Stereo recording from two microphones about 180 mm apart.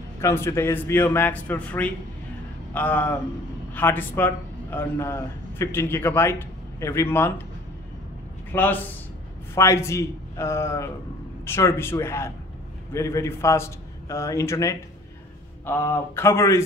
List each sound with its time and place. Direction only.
0.2 s a man's voice: 15° left (ahead or behind)
8.5 s a man's voice: 10° left (ahead or behind)